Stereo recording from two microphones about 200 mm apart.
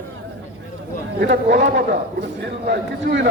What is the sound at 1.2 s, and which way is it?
A man's voice, 60° right (ahead or behind).